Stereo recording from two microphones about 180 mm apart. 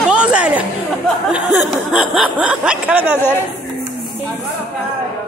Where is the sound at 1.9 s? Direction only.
5° right (ahead or behind).